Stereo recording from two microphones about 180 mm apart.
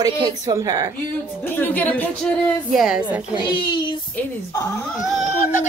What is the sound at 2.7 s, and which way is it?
Speech, centre (ahead or behind).